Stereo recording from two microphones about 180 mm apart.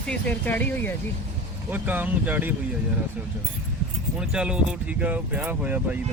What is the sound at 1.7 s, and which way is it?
Speech, 10° right (ahead or behind).